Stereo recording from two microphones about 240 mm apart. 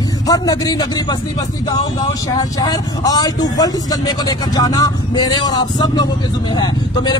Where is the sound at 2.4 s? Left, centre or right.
Centre.